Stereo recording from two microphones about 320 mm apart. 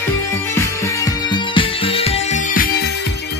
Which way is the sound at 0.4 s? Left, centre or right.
Centre.